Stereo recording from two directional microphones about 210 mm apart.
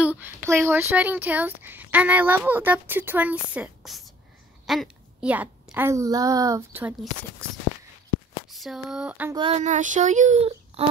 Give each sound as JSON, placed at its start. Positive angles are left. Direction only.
{"t": 0.0, "sound": "a woman's voice", "side_deg": -10}
{"t": 8.5, "sound": "a sound", "side_deg": 0}
{"t": 9.3, "sound": "speech", "side_deg": -25}